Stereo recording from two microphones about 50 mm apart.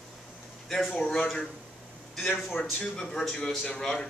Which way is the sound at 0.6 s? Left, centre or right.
Centre.